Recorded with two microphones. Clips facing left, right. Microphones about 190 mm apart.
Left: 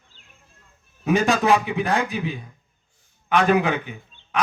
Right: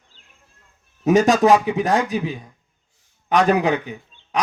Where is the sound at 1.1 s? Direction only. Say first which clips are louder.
Right 5 dB; 45° right (ahead or behind).